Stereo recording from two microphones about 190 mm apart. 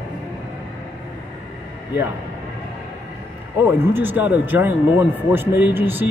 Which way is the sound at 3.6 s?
15° right (ahead or behind).